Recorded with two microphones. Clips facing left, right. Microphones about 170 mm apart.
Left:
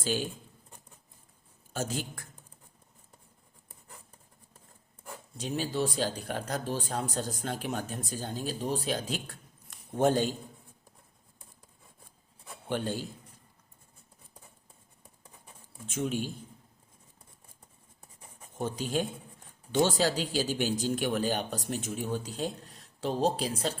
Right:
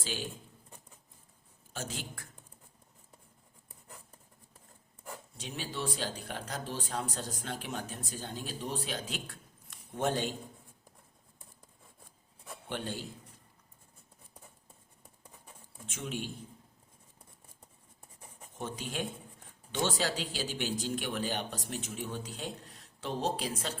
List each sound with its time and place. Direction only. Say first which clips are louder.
1.7 s a man's voice: left 7 dB; 45° left (ahead or behind)
5.4 s speech: left 8 dB; 40° left (ahead or behind)
12.6 s a man's voice: left 6 dB; 40° left (ahead or behind)
15.9 s speech: left 7 dB; 40° left (ahead or behind)
18.6 s speech: left 6 dB; 35° left (ahead or behind)